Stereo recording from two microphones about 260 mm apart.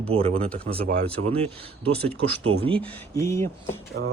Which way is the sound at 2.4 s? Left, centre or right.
Right.